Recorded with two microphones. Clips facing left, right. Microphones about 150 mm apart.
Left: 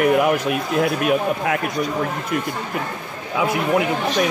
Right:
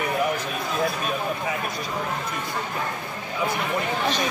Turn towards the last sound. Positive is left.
turn(degrees=80)